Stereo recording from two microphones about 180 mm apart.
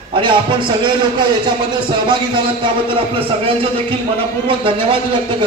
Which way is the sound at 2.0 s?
25° right (ahead or behind).